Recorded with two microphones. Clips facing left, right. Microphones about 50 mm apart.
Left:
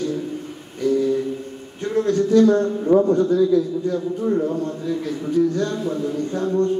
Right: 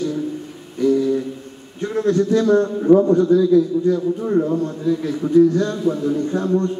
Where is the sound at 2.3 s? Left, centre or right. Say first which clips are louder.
Left 3 dB; right.